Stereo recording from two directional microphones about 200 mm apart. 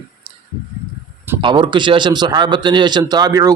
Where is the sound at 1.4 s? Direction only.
25° right (ahead or behind).